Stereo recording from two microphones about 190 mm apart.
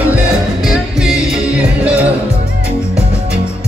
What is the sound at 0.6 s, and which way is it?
Music, 5° right (ahead or behind).